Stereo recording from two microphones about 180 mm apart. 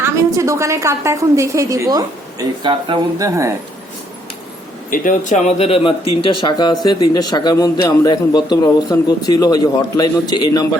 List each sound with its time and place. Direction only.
0.0 s a woman's voice: 15° right (ahead or behind)
4.9 s a man's voice: 45° left (ahead or behind); by 10.7 s 20° left (ahead or behind)